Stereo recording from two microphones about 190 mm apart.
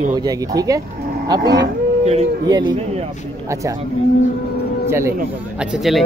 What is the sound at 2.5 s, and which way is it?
Speech, 25° right (ahead or behind).